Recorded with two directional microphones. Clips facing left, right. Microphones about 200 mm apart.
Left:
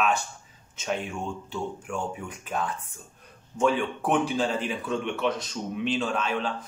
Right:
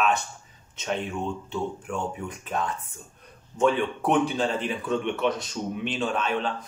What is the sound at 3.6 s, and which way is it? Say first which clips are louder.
Speech: right 2 dB; centre (ahead or behind).